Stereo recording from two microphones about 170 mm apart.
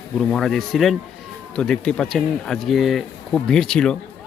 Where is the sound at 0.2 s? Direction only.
Centre (ahead or behind).